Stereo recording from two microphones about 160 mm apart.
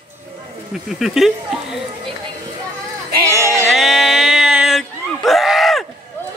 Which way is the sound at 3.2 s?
20° right (ahead or behind).